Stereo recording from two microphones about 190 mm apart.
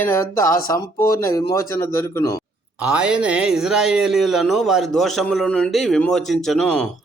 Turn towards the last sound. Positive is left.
turn(degrees=5)  # may be behind; listen again after turning